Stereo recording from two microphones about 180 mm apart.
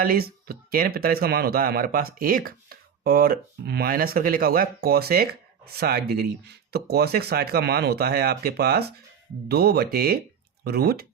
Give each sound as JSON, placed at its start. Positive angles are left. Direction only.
{"t": 0.0, "sound": "speech", "side_deg": -55}